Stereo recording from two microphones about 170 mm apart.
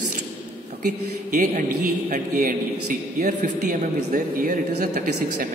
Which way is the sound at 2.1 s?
50° right (ahead or behind).